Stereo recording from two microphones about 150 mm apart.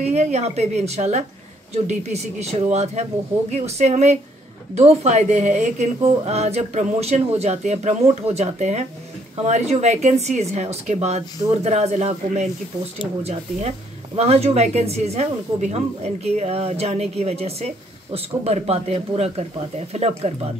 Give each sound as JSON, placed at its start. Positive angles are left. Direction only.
{"t": 0.0, "sound": "speech", "side_deg": -45}